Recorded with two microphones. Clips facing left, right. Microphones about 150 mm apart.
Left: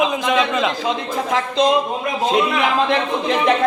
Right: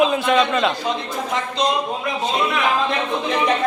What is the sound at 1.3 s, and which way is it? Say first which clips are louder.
Speech: left 5 dB; 90° left.